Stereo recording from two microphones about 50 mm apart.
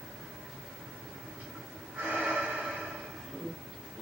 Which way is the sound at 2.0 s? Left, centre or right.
Right.